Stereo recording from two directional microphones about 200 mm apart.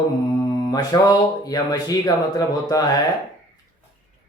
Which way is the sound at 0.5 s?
20° left (ahead or behind).